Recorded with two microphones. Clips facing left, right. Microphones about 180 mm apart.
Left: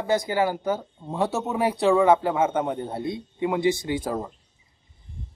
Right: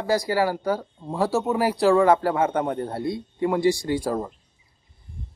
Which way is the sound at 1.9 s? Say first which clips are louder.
Even; 20° left (ahead or behind).